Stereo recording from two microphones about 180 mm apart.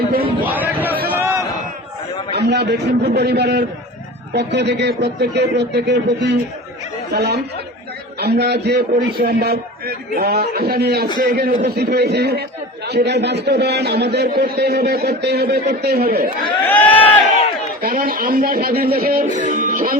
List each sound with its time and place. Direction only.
0.4 s a sound: 10° right (ahead or behind)
2.3 s a man's voice: 65° right (ahead or behind)
16.6 s crowd: 10° left (ahead or behind)
17.8 s speech: 50° right (ahead or behind)
19.4 s music: 45° right (ahead or behind)